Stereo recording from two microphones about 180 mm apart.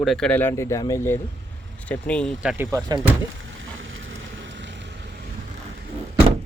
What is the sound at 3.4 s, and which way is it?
Vehicle, 90° right.